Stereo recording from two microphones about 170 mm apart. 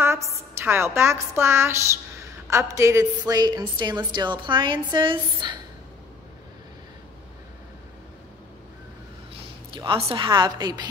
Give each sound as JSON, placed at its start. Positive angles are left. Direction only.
{"t": 0.0, "sound": "a woman's voice", "side_deg": -15}
{"t": 9.8, "sound": "a woman's voice", "side_deg": -30}